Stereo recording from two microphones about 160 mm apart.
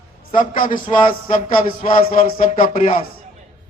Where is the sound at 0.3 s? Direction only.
60° left (ahead or behind).